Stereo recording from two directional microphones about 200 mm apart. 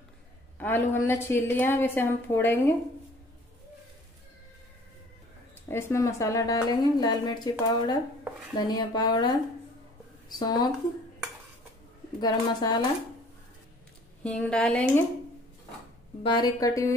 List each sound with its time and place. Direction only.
0.6 s a woman's voice: 10° left (ahead or behind)
5.7 s a woman's voice: 10° left (ahead or behind)
10.4 s a woman's voice: 20° left (ahead or behind)
12.2 s a woman's voice: 20° left (ahead or behind)
14.2 s speech: 5° left (ahead or behind)
16.2 s a woman's voice: 20° left (ahead or behind)